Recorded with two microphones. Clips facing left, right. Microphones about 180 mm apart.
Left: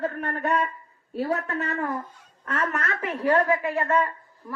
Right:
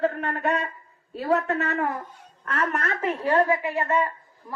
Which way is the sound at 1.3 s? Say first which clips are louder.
Right 7 dB; 65° right (ahead or behind).